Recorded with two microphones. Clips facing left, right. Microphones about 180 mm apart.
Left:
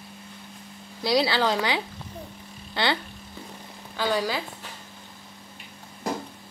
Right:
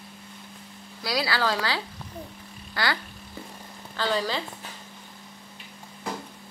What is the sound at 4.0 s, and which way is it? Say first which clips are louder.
Speech: left 1 dB; 10° left (ahead or behind).